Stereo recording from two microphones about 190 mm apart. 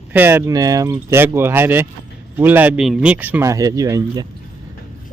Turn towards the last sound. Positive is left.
turn(degrees=-20)  # may be behind; listen again after turning